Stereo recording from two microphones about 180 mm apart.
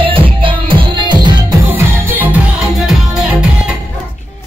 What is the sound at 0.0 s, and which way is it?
Music, 30° right (ahead or behind).